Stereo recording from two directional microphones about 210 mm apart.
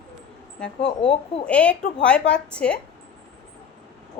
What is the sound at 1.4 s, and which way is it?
A woman's voice, 5° left (ahead or behind).